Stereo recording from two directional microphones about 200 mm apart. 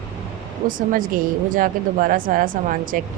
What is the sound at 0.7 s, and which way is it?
A woman's voice, 45° right (ahead or behind).